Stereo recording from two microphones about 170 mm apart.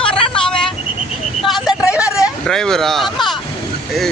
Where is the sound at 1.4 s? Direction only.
Centre (ahead or behind).